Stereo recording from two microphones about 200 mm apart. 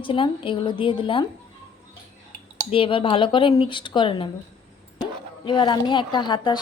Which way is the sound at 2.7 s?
25° left (ahead or behind).